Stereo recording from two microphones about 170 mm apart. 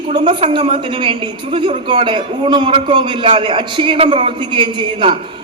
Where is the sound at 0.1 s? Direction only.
30° right (ahead or behind).